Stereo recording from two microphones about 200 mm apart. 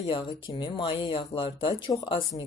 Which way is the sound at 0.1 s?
25° left (ahead or behind).